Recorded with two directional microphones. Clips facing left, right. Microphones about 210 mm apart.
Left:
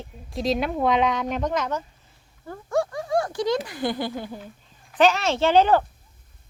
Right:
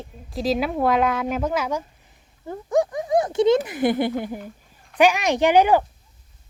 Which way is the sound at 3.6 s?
20° right (ahead or behind).